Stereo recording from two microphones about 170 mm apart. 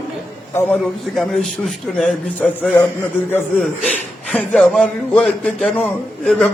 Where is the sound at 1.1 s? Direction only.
Centre (ahead or behind).